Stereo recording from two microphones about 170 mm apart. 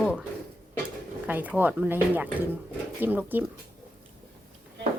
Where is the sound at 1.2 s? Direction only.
10° right (ahead or behind).